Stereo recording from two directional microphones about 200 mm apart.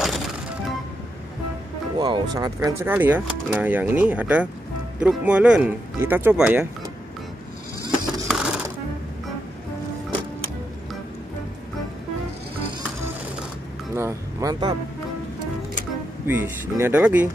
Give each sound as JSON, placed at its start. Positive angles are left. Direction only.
{"t": 2.0, "sound": "speech", "side_deg": -20}
{"t": 8.3, "sound": "music", "side_deg": -5}
{"t": 13.9, "sound": "vehicle", "side_deg": -15}
{"t": 16.3, "sound": "speech", "side_deg": -10}